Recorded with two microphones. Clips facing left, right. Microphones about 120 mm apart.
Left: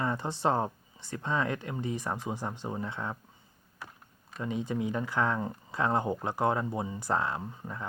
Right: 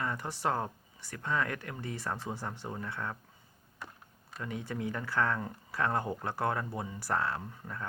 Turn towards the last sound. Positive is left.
turn(degrees=20)  # may be behind; listen again after turning